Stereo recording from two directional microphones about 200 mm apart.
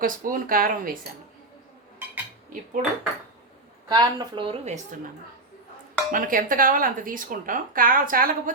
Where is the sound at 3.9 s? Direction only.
20° right (ahead or behind).